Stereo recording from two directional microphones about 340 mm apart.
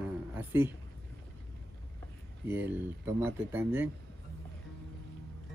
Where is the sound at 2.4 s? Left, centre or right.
Centre.